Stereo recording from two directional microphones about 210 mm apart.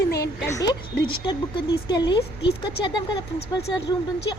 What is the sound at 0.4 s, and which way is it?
Speech, 15° left (ahead or behind).